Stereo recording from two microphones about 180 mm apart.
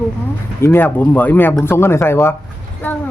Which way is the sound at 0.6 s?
10° left (ahead or behind).